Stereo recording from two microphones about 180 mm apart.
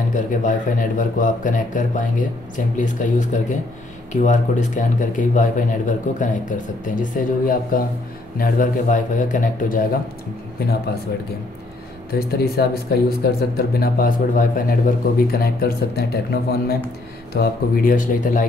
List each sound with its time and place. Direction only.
0.1 s speech: 45° left (ahead or behind)
12.2 s speech: 60° left (ahead or behind)